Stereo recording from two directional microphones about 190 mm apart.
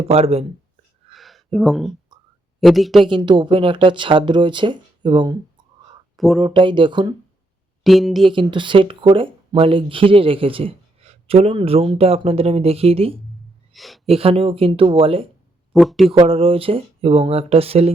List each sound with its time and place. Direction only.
0.1 s speech: 30° right (ahead or behind)
1.1 s a sound: centre (ahead or behind)
2.6 s speech: centre (ahead or behind)
3.1 s speech: 25° right (ahead or behind)
6.1 s speech: centre (ahead or behind)
6.4 s speech: 25° right (ahead or behind)
7.9 s speech: centre (ahead or behind)
8.3 s speech: 25° right (ahead or behind)
13.7 s speech: centre (ahead or behind)
14.1 s speech: 30° right (ahead or behind)
15.7 s speech: centre (ahead or behind)
16.1 s speech: 30° right (ahead or behind)